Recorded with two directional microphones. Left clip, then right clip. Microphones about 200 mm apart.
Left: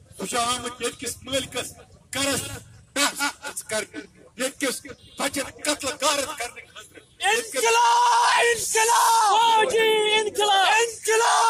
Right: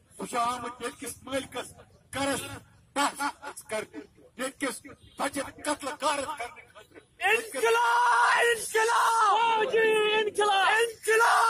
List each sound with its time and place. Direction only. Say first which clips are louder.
0.2 s a man's voice: left 4 dB; 5° right (ahead or behind)
7.6 s yell: left 5 dB; 25° right (ahead or behind)
9.4 s speech: left 5 dB; 10° left (ahead or behind)
10.8 s yell: left 3 dB; 30° right (ahead or behind)